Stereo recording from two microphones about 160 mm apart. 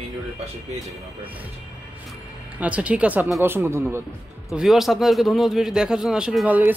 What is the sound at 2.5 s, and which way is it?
A man's voice, 10° right (ahead or behind).